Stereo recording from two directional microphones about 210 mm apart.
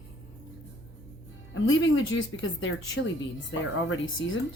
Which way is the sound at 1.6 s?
65° left (ahead or behind).